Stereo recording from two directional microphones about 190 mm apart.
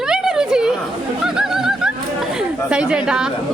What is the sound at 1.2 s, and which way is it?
Bird, centre (ahead or behind).